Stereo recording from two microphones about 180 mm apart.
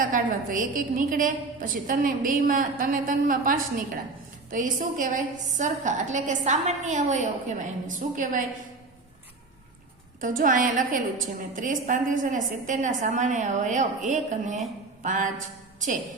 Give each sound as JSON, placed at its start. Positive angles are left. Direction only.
{"t": 0.0, "sound": "a woman's voice", "side_deg": -50}
{"t": 10.2, "sound": "a woman's voice", "side_deg": -45}